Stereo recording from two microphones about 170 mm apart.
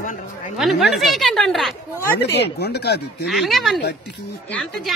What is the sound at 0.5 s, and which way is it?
Speech, centre (ahead or behind).